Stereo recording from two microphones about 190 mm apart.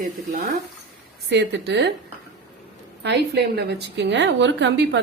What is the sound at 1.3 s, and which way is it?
Speech, 65° right (ahead or behind).